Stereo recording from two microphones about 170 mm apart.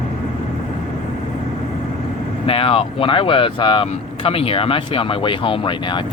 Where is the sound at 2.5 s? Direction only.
35° left (ahead or behind).